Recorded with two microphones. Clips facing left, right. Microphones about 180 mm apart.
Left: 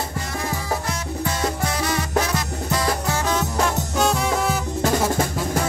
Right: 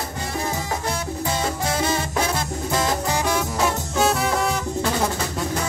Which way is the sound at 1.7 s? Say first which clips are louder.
Even; 25° right (ahead or behind).